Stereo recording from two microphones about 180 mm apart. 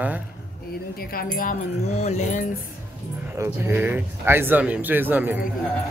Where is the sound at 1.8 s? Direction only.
35° left (ahead or behind).